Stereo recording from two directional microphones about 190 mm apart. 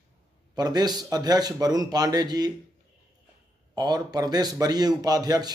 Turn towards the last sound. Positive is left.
turn(degrees=-20)  # may be behind; listen again after turning